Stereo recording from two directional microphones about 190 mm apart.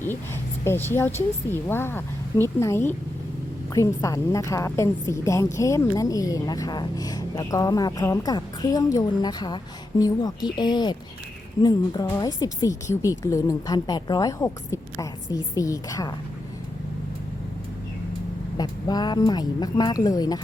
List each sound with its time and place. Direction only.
0.6 s a woman's voice: 10° left (ahead or behind)
12.0 s a woman's voice: 15° left (ahead or behind)
18.5 s a woman's voice: 20° left (ahead or behind)